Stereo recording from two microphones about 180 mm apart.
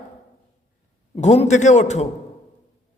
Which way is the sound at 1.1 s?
35° left (ahead or behind).